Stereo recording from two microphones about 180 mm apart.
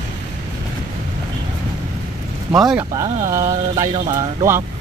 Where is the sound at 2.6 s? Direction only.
5° right (ahead or behind).